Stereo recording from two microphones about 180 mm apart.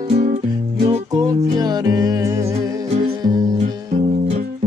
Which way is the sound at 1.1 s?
20° right (ahead or behind).